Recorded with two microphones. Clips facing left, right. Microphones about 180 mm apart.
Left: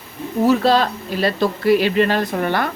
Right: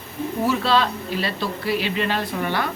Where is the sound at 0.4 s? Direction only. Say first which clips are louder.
Left 6 dB; 40° left (ahead or behind).